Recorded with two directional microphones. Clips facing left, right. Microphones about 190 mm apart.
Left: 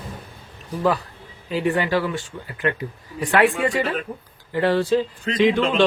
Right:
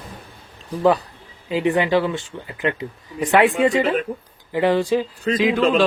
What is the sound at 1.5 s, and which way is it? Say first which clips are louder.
Speech: right 3 dB; 20° right (ahead or behind).